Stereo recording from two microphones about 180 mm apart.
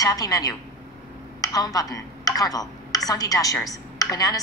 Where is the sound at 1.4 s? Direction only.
20° left (ahead or behind).